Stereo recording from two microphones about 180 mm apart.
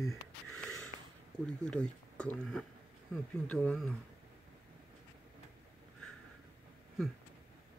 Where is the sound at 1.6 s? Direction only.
5° left (ahead or behind).